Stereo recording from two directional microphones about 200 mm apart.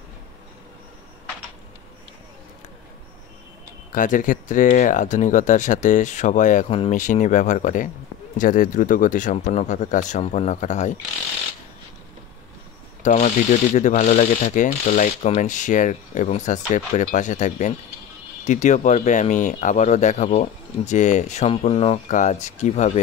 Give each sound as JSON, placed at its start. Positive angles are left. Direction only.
{"t": 3.9, "sound": "speech", "side_deg": 40}
{"t": 13.0, "sound": "speech", "side_deg": 40}